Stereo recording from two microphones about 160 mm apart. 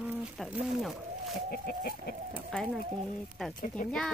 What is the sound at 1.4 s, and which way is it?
Chicken, 75° left (ahead or behind).